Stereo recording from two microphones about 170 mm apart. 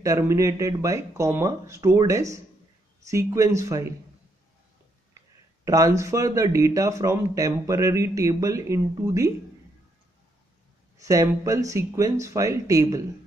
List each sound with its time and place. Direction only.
0.0 s speech: 20° right (ahead or behind)
5.7 s speech: 20° right (ahead or behind)
11.0 s speech: 20° right (ahead or behind)